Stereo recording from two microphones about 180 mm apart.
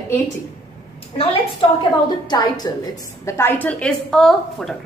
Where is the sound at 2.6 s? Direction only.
20° left (ahead or behind).